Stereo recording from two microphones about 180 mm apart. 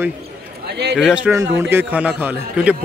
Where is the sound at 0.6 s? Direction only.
70° right (ahead or behind).